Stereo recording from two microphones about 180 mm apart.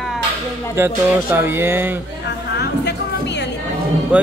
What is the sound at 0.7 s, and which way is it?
Speech, 10° right (ahead or behind).